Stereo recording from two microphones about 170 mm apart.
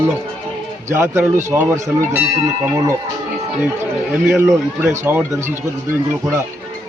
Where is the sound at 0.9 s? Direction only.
15° right (ahead or behind).